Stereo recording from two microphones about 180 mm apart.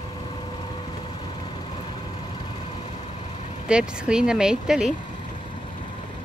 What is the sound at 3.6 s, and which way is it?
Speech, 5° right (ahead or behind).